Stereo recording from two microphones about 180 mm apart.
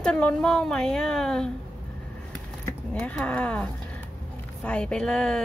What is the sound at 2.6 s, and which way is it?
Speech, 10° left (ahead or behind).